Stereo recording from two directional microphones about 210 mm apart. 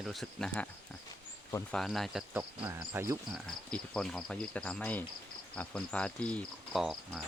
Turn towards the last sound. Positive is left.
turn(degrees=0)  # may be behind; listen again after turning